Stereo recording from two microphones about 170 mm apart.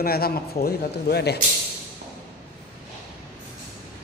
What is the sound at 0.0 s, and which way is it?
A man's voice, 65° left (ahead or behind).